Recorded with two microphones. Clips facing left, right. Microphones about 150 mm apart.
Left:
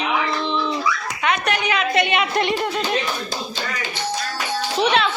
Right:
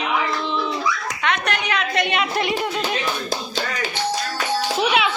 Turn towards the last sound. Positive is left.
turn(degrees=-5)  # may be behind; listen again after turning